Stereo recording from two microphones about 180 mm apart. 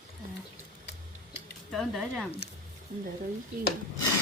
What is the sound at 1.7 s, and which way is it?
Speech, centre (ahead or behind).